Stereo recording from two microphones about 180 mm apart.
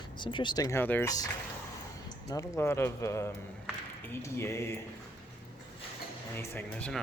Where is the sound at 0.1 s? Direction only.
25° left (ahead or behind).